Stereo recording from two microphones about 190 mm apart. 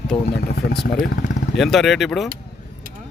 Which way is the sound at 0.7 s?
60° left (ahead or behind).